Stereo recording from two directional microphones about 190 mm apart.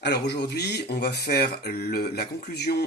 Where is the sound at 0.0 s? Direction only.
60° left (ahead or behind).